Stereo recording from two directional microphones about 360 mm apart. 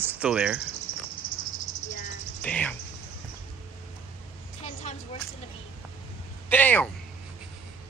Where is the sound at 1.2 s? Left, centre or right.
Left.